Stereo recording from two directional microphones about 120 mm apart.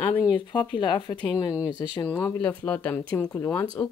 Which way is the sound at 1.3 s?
25° left (ahead or behind).